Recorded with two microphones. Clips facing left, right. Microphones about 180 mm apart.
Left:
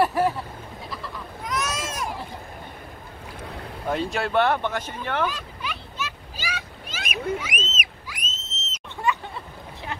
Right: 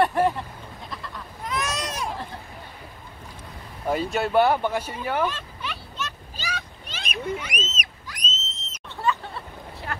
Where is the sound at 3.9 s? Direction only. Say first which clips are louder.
Right 2 dB; centre (ahead or behind).